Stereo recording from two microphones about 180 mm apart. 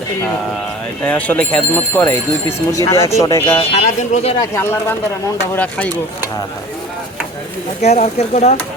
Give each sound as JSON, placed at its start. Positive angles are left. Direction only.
{"t": 1.0, "sound": "speech", "side_deg": 10}
{"t": 3.7, "sound": "speech", "side_deg": 35}
{"t": 4.4, "sound": "speech", "side_deg": 15}
{"t": 7.8, "sound": "speech", "side_deg": 40}